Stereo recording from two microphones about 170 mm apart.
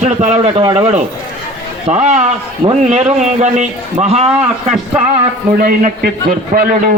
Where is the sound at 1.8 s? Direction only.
40° right (ahead or behind).